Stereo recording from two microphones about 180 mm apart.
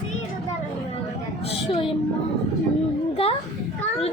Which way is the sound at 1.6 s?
30° left (ahead or behind).